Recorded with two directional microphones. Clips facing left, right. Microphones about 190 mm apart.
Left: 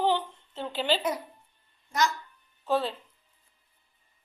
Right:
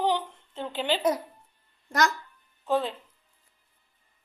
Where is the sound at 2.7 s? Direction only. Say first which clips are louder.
Right 1 dB; 15° right (ahead or behind).